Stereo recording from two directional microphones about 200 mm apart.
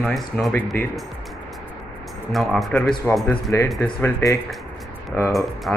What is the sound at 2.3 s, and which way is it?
Speech, centre (ahead or behind).